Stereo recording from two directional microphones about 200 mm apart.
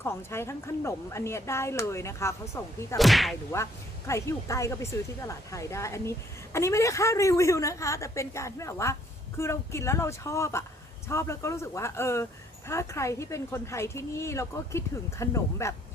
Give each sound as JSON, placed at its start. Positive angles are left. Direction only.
{"t": 0.0, "sound": "a woman's voice", "side_deg": 10}
{"t": 3.0, "sound": "whip", "side_deg": 0}
{"t": 3.5, "sound": "a woman's voice", "side_deg": 15}